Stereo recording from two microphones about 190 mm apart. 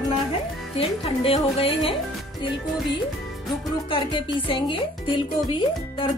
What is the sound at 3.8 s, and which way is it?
Speech, 25° left (ahead or behind).